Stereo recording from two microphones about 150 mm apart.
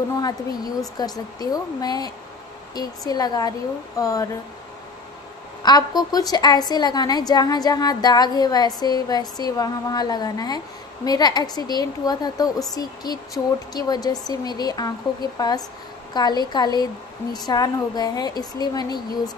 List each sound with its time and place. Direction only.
0.2 s a woman's voice: 25° left (ahead or behind)
5.6 s a woman's voice: 25° left (ahead or behind)